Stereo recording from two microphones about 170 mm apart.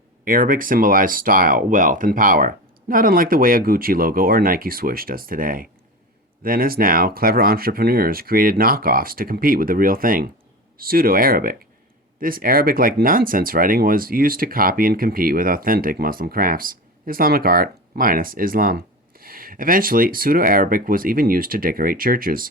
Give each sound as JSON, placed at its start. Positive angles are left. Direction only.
{"t": 0.3, "sound": "speech", "side_deg": -55}